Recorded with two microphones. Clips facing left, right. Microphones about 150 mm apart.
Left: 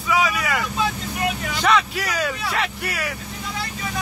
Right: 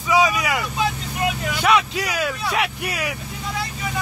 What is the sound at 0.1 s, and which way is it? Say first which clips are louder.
Vehicle: right 3 dB; 15° right (ahead or behind).